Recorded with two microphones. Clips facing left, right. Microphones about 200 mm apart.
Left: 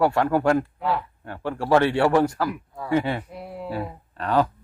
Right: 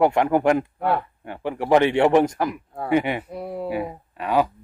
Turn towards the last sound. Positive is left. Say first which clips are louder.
# right 1 dB
turn(degrees=-10)  # may be behind; listen again after turning